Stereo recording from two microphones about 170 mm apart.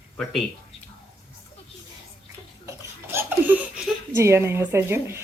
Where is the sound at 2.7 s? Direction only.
15° right (ahead or behind).